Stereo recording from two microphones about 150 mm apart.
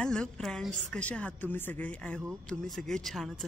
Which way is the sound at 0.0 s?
5° left (ahead or behind).